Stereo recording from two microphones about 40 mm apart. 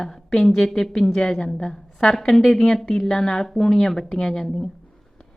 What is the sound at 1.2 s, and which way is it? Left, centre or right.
Speech, left.